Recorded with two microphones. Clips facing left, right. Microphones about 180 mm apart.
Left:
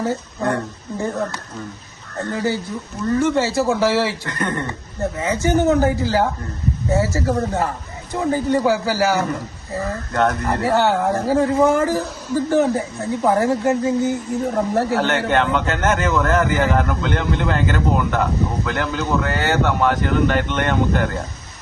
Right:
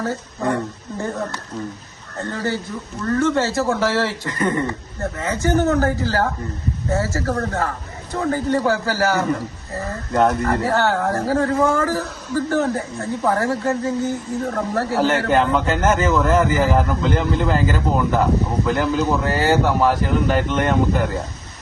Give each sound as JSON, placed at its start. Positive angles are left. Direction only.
{"t": 2.3, "sound": "a man's voice", "side_deg": 15}
{"t": 4.3, "sound": "a man's voice", "side_deg": -5}
{"t": 5.1, "sound": "a man's voice", "side_deg": 15}
{"t": 10.2, "sound": "a man's voice", "side_deg": -5}
{"t": 10.6, "sound": "a man's voice", "side_deg": 15}
{"t": 14.9, "sound": "a man's voice", "side_deg": -5}